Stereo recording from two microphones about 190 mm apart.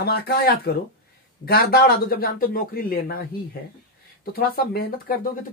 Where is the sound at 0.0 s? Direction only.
55° left (ahead or behind).